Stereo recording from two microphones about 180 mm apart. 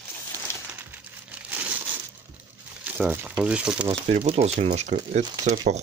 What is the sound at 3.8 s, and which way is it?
Speech, 30° right (ahead or behind).